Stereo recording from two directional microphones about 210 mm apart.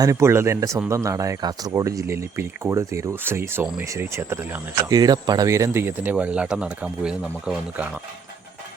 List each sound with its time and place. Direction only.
0.0 s speech: 15° right (ahead or behind)